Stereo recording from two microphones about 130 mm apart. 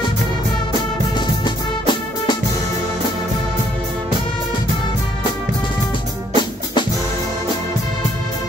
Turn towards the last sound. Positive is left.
turn(degrees=35)  # may be behind; listen again after turning